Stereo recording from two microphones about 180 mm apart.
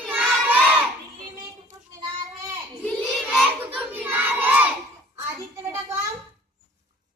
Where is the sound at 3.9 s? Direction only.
10° right (ahead or behind).